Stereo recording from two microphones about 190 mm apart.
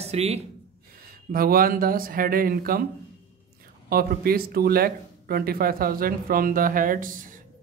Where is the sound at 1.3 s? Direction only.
50° right (ahead or behind).